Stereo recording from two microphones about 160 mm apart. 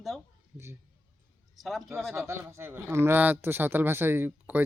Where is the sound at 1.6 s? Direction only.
Centre (ahead or behind).